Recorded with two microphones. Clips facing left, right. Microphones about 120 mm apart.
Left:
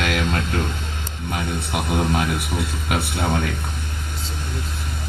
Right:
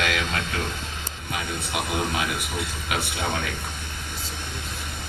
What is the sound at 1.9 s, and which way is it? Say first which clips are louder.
Speech: left 6 dB; 45° left (ahead or behind).